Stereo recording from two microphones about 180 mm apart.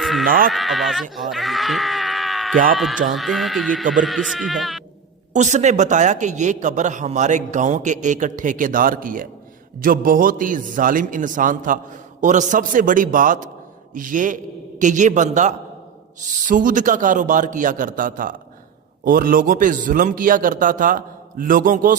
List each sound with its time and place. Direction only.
0.0 s bleat: centre (ahead or behind)
0.3 s a man's voice: 50° right (ahead or behind)
0.5 s speech: centre (ahead or behind)
5.3 s a man's voice: 40° right (ahead or behind)